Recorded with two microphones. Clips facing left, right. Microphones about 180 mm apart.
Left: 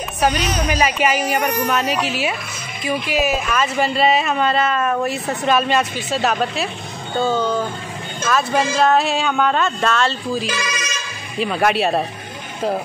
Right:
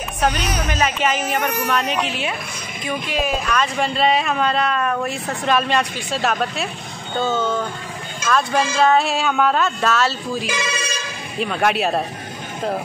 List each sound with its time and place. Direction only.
0.2 s a woman's voice: 10° left (ahead or behind); by 10.6 s 5° right (ahead or behind)
10.6 s telephone: 30° right (ahead or behind)
11.3 s speech: centre (ahead or behind)